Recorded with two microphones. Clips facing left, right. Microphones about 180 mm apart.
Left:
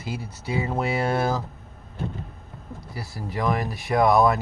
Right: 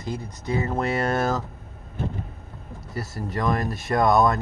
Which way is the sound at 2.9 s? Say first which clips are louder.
Right 4 dB; centre (ahead or behind).